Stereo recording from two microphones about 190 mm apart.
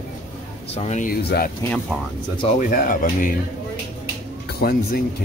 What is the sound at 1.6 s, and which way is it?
Speech, 15° left (ahead or behind).